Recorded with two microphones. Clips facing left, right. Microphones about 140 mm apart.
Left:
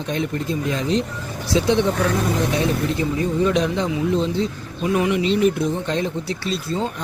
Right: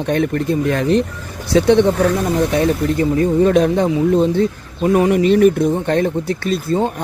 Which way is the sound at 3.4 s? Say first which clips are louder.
Right 6 dB; 50° right (ahead or behind).